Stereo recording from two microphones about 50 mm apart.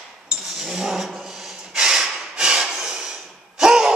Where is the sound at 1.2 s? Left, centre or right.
Centre.